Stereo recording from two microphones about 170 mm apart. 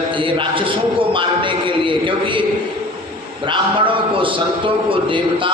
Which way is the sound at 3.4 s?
30° right (ahead or behind).